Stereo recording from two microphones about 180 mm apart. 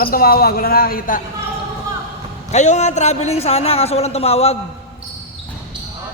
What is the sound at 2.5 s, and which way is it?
A man's voice, 40° left (ahead or behind).